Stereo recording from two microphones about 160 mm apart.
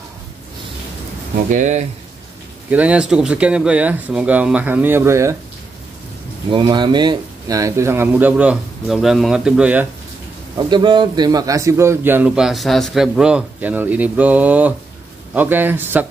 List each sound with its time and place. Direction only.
1.5 s speech: 50° right (ahead or behind)
2.7 s a man's voice: 10° right (ahead or behind)
6.5 s a man's voice: 30° right (ahead or behind); by 9.8 s 5° right (ahead or behind)
10.7 s a man's voice: 30° right (ahead or behind); by 16.1 s 10° right (ahead or behind)